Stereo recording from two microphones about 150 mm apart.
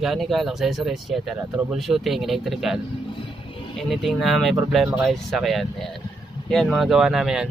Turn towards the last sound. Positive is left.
turn(degrees=-5)  # may be behind; listen again after turning